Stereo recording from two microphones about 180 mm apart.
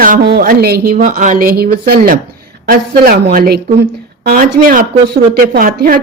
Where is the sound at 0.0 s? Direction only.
50° right (ahead or behind).